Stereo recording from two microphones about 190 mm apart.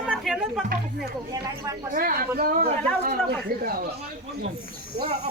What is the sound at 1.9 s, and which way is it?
Speech, 50° right (ahead or behind).